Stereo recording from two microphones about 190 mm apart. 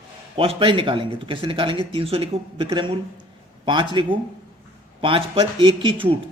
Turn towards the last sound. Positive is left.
turn(degrees=-25)  # may be behind; listen again after turning